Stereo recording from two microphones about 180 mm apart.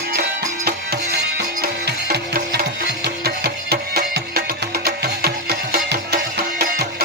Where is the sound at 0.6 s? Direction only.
60° right (ahead or behind).